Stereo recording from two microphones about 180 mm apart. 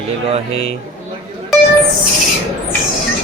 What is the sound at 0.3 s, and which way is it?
Speech, 30° right (ahead or behind).